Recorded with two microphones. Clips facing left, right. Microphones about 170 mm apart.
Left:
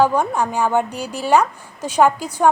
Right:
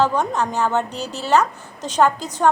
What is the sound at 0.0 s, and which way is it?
A woman's voice, 10° left (ahead or behind).